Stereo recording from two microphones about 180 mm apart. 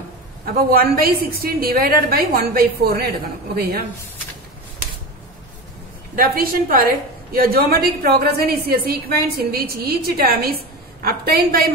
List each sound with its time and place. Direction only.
0.5 s a woman's voice: 55° right (ahead or behind)
6.1 s a woman's voice: 55° right (ahead or behind)